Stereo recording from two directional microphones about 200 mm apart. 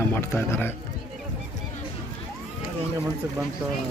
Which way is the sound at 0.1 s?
10° left (ahead or behind).